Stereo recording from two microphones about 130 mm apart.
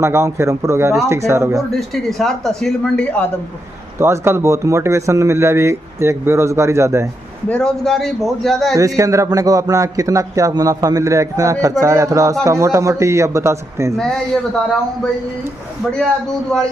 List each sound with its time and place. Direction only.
0.0 s speech: 20° right (ahead or behind)
1.7 s speech: centre (ahead or behind)
4.0 s speech: 20° right (ahead or behind)
7.4 s speech: 5° left (ahead or behind)
8.7 s speech: 25° right (ahead or behind)
13.9 s speech: 5° left (ahead or behind)